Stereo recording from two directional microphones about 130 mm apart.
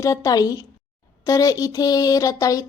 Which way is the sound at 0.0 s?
25° left (ahead or behind).